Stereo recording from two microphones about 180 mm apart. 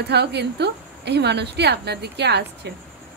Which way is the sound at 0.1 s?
70° right (ahead or behind).